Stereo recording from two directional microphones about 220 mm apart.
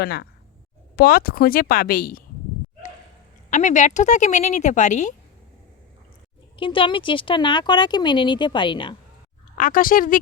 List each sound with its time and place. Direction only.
0.0 s speech: 45° left (ahead or behind)
3.5 s speech: 35° left (ahead or behind)
6.6 s speech: 20° left (ahead or behind)
9.6 s speech: 40° left (ahead or behind)